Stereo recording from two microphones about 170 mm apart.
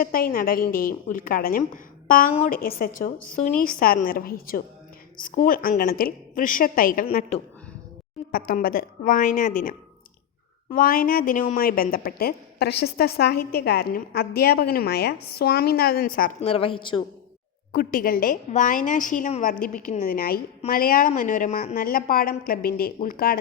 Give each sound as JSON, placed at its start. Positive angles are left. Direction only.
{"t": 0.0, "sound": "speech", "side_deg": 60}
{"t": 8.3, "sound": "a woman's voice", "side_deg": 55}
{"t": 10.8, "sound": "speech", "side_deg": 55}
{"t": 16.4, "sound": "a woman's voice", "side_deg": 35}
{"t": 17.7, "sound": "a woman's voice", "side_deg": 55}
{"t": 20.1, "sound": "speech", "side_deg": 60}